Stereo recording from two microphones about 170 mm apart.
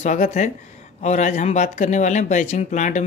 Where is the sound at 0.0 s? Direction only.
45° left (ahead or behind).